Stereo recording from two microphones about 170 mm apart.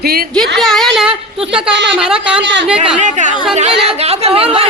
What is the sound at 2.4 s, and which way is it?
Speech, 90° right.